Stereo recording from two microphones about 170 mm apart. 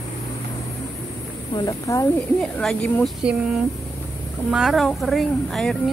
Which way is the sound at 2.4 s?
5° left (ahead or behind).